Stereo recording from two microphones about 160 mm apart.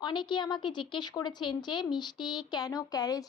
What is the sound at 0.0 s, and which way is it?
A woman's voice, 30° left (ahead or behind).